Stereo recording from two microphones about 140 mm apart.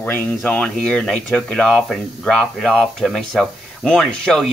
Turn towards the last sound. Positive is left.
turn(degrees=5)  # may be behind; listen again after turning